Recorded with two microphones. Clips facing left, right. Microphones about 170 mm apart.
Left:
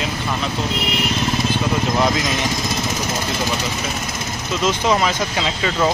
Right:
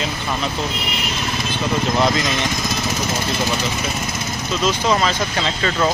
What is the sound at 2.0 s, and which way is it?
Speech, 5° left (ahead or behind).